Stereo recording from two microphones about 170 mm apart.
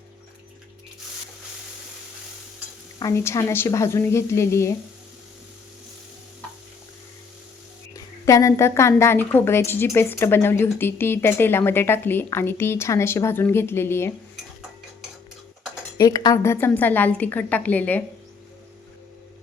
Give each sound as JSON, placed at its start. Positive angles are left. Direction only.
{"t": 3.0, "sound": "a woman's voice", "side_deg": 15}
{"t": 7.9, "sound": "a woman's voice", "side_deg": 20}
{"t": 16.0, "sound": "a woman's voice", "side_deg": 20}